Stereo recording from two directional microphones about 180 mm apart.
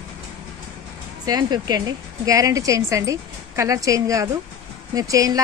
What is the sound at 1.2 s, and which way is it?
A woman's voice, 20° right (ahead or behind).